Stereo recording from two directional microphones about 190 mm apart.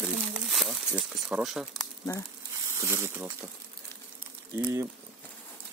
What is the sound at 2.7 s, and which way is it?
Speech, 15° right (ahead or behind).